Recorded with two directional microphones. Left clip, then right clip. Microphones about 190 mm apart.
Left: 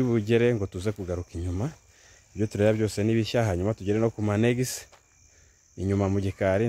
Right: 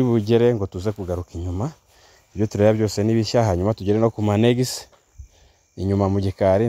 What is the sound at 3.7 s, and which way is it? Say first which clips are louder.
Speech: right 6 dB; 35° right (ahead or behind).